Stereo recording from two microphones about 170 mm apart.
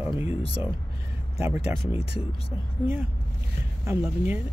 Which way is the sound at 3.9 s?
10° right (ahead or behind).